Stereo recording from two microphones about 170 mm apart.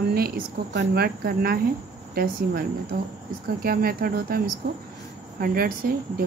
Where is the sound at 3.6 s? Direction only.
60° right (ahead or behind).